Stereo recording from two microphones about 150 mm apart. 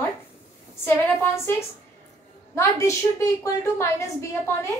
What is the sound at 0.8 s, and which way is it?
A woman's voice, 15° left (ahead or behind).